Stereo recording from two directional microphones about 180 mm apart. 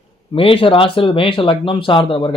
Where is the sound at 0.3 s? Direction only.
30° left (ahead or behind).